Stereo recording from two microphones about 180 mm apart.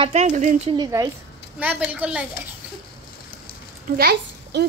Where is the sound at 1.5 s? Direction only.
10° right (ahead or behind).